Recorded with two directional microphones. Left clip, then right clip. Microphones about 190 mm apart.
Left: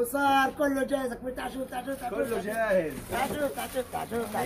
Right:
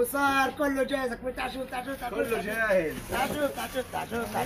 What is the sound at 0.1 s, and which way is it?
Speech, 20° left (ahead or behind).